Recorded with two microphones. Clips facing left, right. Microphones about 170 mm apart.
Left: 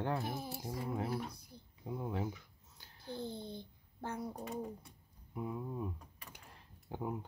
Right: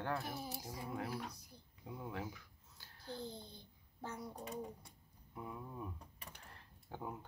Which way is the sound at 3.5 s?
55° left (ahead or behind).